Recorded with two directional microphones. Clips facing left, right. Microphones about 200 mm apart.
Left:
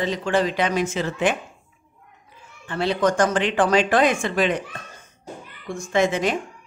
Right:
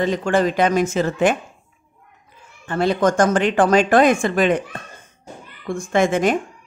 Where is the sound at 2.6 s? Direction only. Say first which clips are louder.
Right 3 dB; 45° right (ahead or behind).